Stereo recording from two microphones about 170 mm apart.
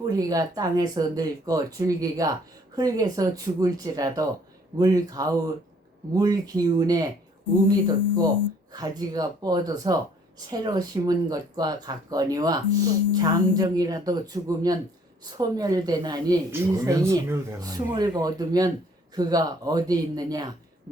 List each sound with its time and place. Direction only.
0.0 s a woman's voice: 20° right (ahead or behind)